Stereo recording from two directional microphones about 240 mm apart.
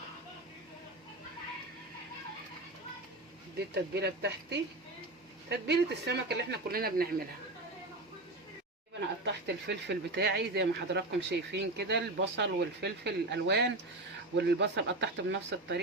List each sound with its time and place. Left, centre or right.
3.8 s speech: right
9.2 s speech: right